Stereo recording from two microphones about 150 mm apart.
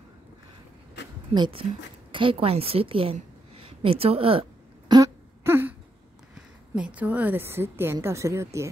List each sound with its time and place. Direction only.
1.3 s a woman's voice: 35° right (ahead or behind)
3.5 s a sound: 35° right (ahead or behind); by 5.8 s 15° right (ahead or behind)
6.3 s a woman's voice: 5° right (ahead or behind)